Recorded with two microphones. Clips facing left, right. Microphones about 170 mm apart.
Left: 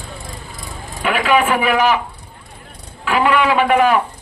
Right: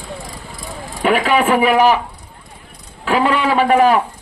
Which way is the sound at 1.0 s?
35° right (ahead or behind).